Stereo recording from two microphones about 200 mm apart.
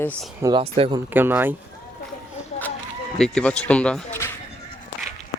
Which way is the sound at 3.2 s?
5° left (ahead or behind).